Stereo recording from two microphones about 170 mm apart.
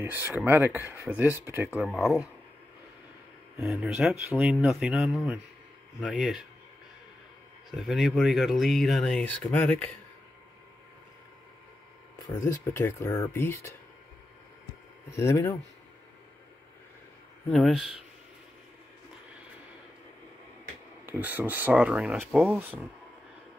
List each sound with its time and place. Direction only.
0.0 s speech: 10° right (ahead or behind)
1.8 s speech: centre (ahead or behind)
3.6 s speech: 5° right (ahead or behind)
7.7 s speech: centre (ahead or behind)
12.4 s speech: 15° left (ahead or behind)
15.0 s speech: 15° left (ahead or behind)
17.5 s speech: centre (ahead or behind)
21.1 s speech: 10° right (ahead or behind)